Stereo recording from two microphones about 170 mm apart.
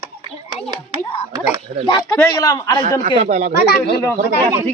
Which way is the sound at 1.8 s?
25° left (ahead or behind).